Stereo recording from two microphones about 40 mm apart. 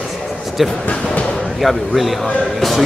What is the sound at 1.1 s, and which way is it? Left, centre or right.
Speech, left.